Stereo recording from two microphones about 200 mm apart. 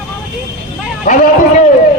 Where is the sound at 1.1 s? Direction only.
40° left (ahead or behind).